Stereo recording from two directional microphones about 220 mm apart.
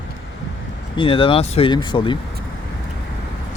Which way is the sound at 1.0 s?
25° left (ahead or behind).